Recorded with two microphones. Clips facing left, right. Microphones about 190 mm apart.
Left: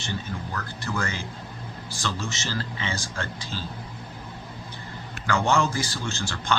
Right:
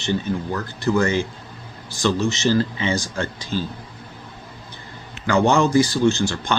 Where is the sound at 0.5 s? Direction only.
20° right (ahead or behind).